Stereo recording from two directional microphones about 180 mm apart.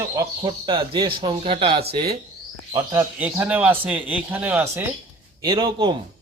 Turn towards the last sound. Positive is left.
turn(degrees=-25)  # may be behind; listen again after turning